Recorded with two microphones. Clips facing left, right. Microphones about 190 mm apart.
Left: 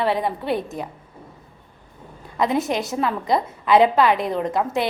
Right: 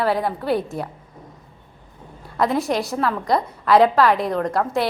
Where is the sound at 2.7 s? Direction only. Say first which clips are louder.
Right 1 dB; 20° left (ahead or behind).